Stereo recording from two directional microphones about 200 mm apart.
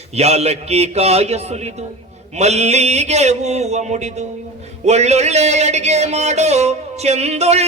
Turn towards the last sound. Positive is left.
turn(degrees=-35)  # may be behind; listen again after turning